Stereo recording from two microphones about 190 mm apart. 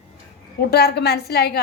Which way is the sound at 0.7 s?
60° left (ahead or behind).